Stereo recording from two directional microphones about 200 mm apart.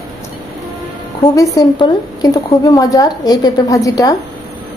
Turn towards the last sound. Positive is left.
turn(degrees=15)  # may be behind; listen again after turning